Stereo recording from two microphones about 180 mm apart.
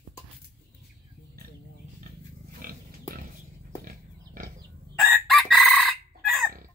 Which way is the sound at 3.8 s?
50° right (ahead or behind).